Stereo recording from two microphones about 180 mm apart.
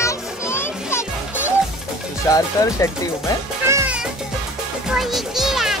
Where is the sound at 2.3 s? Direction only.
20° left (ahead or behind).